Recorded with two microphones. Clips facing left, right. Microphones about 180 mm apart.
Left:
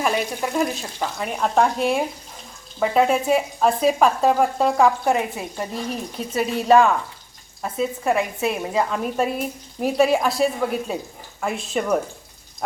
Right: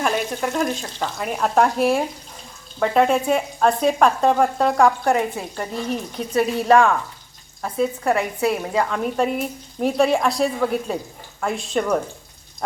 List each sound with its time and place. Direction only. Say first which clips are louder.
0.0 s speech: even; 5° left (ahead or behind)
8.0 s a woman's voice: left 1 dB; 20° left (ahead or behind)